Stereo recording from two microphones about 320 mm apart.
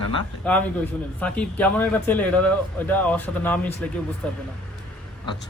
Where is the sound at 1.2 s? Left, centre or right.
Centre.